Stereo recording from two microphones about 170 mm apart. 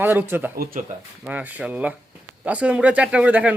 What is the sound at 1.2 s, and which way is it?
Speech, 10° right (ahead or behind).